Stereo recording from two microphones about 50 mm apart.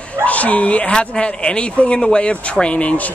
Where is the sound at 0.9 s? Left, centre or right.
Centre.